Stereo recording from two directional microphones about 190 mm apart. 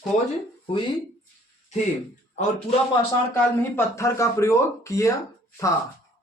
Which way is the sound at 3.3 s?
15° left (ahead or behind).